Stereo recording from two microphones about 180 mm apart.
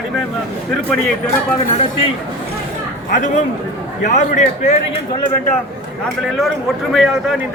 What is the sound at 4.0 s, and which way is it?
Speech, 40° left (ahead or behind).